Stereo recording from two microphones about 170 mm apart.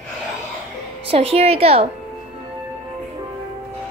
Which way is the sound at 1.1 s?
35° right (ahead or behind).